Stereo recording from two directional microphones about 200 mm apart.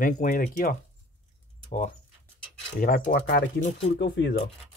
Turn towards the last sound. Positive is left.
turn(degrees=55)  # may be behind; listen again after turning